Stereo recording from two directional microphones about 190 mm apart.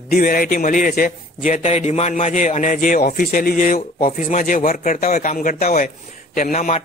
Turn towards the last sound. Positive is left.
turn(degrees=45)  # may be behind; listen again after turning